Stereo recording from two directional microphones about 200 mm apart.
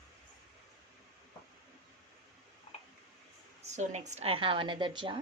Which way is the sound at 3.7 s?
35° right (ahead or behind).